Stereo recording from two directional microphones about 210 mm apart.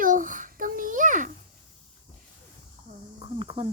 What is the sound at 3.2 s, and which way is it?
Cricket, 25° right (ahead or behind).